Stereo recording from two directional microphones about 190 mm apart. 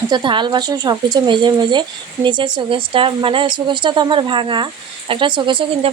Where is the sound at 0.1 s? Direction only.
25° right (ahead or behind).